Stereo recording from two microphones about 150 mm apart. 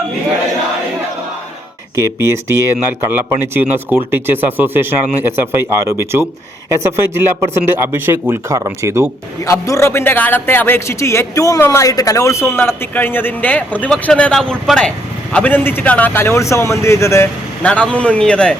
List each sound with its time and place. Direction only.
2.0 s speech: 20° right (ahead or behind)
9.5 s speech: 20° left (ahead or behind)